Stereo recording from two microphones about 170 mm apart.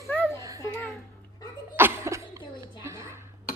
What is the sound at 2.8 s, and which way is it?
Dishes, 15° right (ahead or behind).